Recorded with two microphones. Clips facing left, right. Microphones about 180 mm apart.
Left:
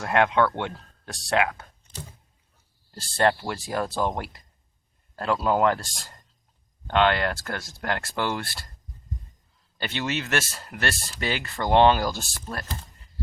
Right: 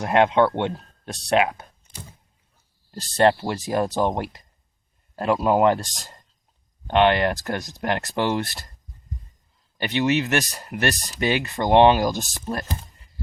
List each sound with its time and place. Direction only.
0.0 s speech: 20° right (ahead or behind)
2.9 s speech: 20° right (ahead or behind)
9.7 s speech: 15° right (ahead or behind)